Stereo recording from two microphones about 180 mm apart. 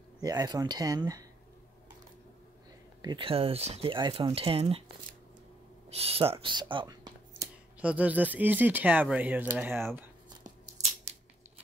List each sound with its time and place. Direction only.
0.2 s speech: 20° right (ahead or behind)
3.0 s speech: 25° right (ahead or behind)
5.9 s speech: 35° right (ahead or behind)
7.8 s speech: 10° right (ahead or behind)